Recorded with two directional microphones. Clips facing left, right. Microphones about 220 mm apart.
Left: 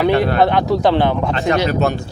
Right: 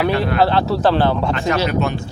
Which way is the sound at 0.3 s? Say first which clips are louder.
Left 2 dB; 15° left (ahead or behind).